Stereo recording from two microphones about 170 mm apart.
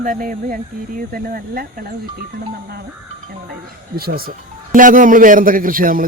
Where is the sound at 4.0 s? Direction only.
60° right (ahead or behind).